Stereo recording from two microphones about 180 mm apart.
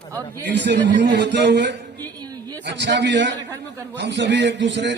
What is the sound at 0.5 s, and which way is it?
A man's voice, 75° right (ahead or behind).